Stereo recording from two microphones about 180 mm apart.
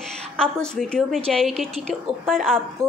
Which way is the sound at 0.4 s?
5° left (ahead or behind).